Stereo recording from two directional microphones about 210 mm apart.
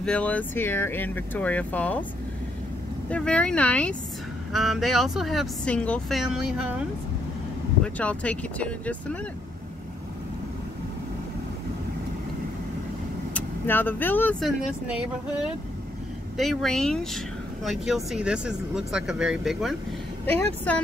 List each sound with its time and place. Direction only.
0.0 s speech: 5° left (ahead or behind)
3.1 s speech: 5° left (ahead or behind)
7.8 s speech: 5° left (ahead or behind)
13.3 s speech: 10° left (ahead or behind)
16.3 s speech: centre (ahead or behind)